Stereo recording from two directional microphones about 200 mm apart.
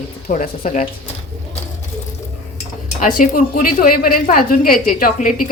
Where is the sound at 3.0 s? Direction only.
45° left (ahead or behind).